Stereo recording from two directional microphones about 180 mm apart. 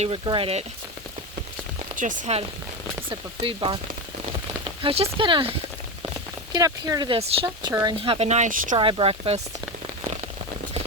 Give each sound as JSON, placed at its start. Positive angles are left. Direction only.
{"t": 0.0, "sound": "speech", "side_deg": -30}
{"t": 2.0, "sound": "speech", "side_deg": -40}
{"t": 3.1, "sound": "speech", "side_deg": -30}
{"t": 4.8, "sound": "speech", "side_deg": -30}
{"t": 7.7, "sound": "speech", "side_deg": -15}
{"t": 8.0, "sound": "speech", "side_deg": -35}
{"t": 8.7, "sound": "speech", "side_deg": -30}